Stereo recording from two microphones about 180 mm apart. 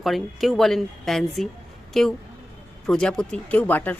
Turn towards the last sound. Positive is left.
turn(degrees=10)  # may be behind; listen again after turning